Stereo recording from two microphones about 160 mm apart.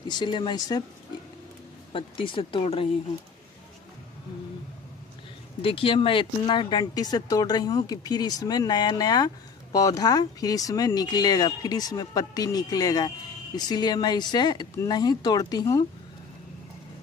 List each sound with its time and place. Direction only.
0.1 s speech: 30° left (ahead or behind)
1.9 s speech: 30° left (ahead or behind)
5.6 s speech: 35° left (ahead or behind)